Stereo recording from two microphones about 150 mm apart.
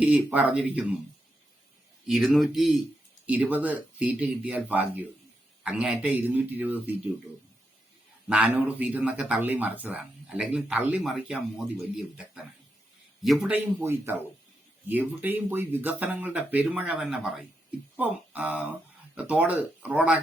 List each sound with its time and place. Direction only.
0.0 s speech: 10° right (ahead or behind)
2.0 s speech: 5° right (ahead or behind)
8.3 s speech: 10° right (ahead or behind)
11.0 s speech: centre (ahead or behind)
13.8 s speech: 15° right (ahead or behind)